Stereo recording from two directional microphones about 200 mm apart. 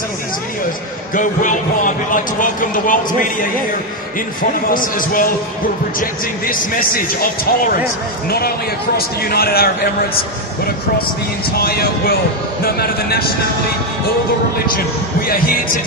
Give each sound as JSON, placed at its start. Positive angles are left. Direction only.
{"t": 1.1, "sound": "speech", "side_deg": 40}
{"t": 4.4, "sound": "speech", "side_deg": 45}
{"t": 6.9, "sound": "speech", "side_deg": 45}
{"t": 11.5, "sound": "speech", "side_deg": 50}